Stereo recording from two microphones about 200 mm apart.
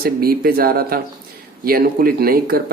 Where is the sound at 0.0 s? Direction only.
50° right (ahead or behind).